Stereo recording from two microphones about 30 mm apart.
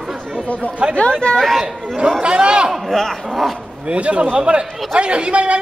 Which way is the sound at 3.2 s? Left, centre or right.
Centre.